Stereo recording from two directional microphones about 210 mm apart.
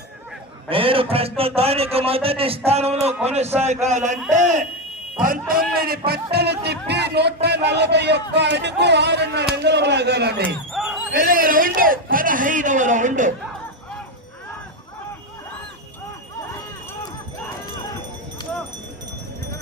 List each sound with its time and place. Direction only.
0.7 s a man's voice: 25° right (ahead or behind); by 10.4 s 50° right (ahead or behind)
10.4 s a sound: centre (ahead or behind)
11.1 s a man's voice: 45° right (ahead or behind)